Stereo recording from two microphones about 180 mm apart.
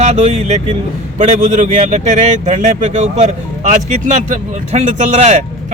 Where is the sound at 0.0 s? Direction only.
40° right (ahead or behind).